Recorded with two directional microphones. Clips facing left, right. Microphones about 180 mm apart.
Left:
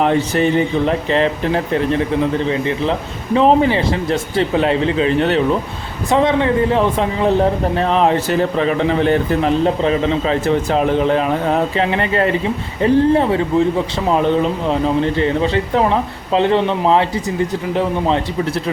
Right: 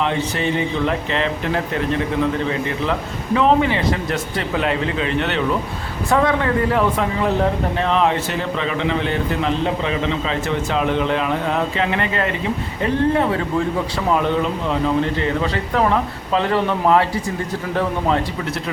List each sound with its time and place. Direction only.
0.0 s speech: 45° left (ahead or behind)
6.1 s speech: 20° left (ahead or behind)
7.8 s speech: 35° left (ahead or behind)
14.7 s speech: 30° left (ahead or behind)